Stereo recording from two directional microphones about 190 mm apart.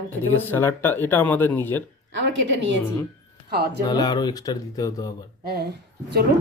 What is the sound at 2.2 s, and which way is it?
Speech, 75° right (ahead or behind).